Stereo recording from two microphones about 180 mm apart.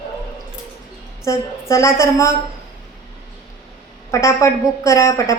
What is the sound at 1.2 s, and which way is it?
A woman's voice, 15° left (ahead or behind).